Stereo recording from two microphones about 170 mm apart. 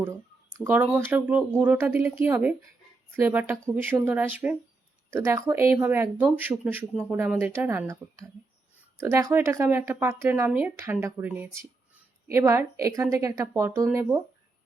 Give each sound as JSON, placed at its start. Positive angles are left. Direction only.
{"t": 0.6, "sound": "speech", "side_deg": -10}
{"t": 9.0, "sound": "speech", "side_deg": -15}
{"t": 11.9, "sound": "a sound", "side_deg": -15}
{"t": 12.8, "sound": "speech", "side_deg": -20}